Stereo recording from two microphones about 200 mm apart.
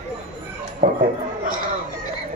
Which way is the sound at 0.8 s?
40° right (ahead or behind).